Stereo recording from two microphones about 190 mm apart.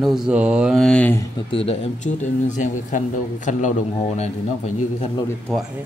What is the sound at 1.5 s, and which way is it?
Speech, 30° left (ahead or behind).